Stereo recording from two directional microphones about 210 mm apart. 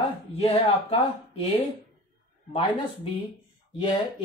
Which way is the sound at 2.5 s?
25° left (ahead or behind).